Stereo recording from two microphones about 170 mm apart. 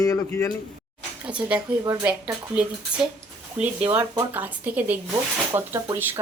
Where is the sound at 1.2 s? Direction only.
10° right (ahead or behind).